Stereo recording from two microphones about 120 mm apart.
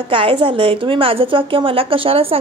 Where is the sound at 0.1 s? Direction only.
45° right (ahead or behind).